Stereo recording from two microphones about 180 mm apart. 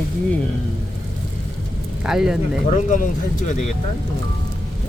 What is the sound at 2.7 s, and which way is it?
Speech, 45° left (ahead or behind).